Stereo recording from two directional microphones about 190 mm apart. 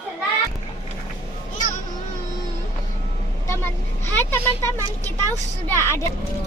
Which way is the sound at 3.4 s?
10° left (ahead or behind).